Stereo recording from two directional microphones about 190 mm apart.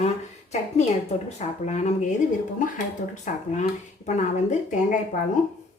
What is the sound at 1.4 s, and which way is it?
Speech, 35° left (ahead or behind).